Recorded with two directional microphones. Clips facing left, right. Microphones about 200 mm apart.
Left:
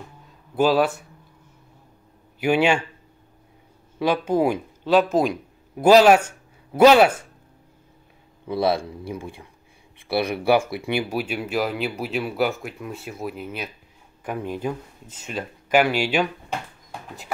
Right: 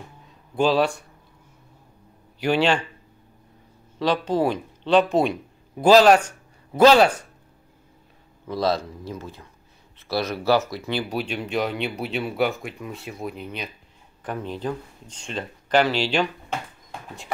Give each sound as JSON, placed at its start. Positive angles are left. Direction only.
{"t": 0.6, "sound": "speech", "side_deg": 5}
{"t": 2.4, "sound": "speech", "side_deg": 10}
{"t": 4.0, "sound": "a man's voice", "side_deg": 10}
{"t": 8.5, "sound": "speech", "side_deg": 10}